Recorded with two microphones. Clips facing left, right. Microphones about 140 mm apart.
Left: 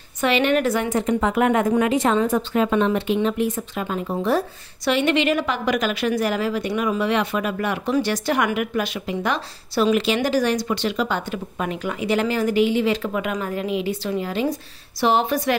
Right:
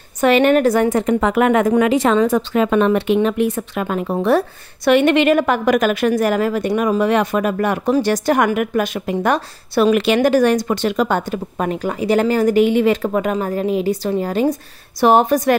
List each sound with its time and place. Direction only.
0.2 s speech: 45° right (ahead or behind)
0.9 s speech: 65° right (ahead or behind); by 15.5 s 45° right (ahead or behind)